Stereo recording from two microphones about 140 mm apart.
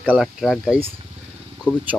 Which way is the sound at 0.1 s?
Centre (ahead or behind).